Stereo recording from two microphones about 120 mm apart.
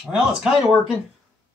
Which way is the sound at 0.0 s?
10° right (ahead or behind).